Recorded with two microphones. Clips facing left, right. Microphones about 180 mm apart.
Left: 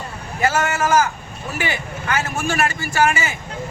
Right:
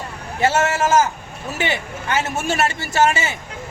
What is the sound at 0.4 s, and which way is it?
Speech, 25° right (ahead or behind).